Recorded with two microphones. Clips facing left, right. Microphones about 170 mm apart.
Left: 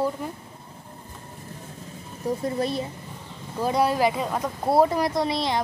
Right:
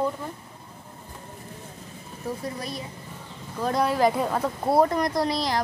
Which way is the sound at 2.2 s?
25° left (ahead or behind).